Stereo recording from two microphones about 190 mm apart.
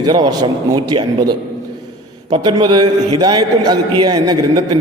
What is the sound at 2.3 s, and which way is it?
A man's voice, 20° right (ahead or behind).